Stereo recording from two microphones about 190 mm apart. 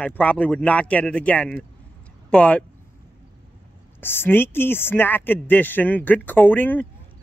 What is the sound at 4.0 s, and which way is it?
Speech, 10° left (ahead or behind).